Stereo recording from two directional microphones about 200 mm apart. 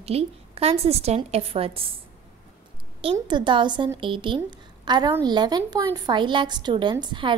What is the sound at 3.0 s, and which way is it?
A woman's voice, 25° right (ahead or behind).